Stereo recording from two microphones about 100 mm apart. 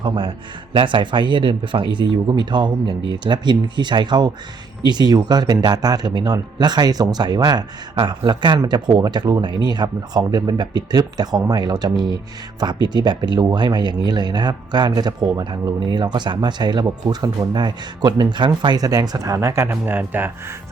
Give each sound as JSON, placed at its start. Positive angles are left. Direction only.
{"t": 0.0, "sound": "speech", "side_deg": -55}
{"t": 7.9, "sound": "speech", "side_deg": -60}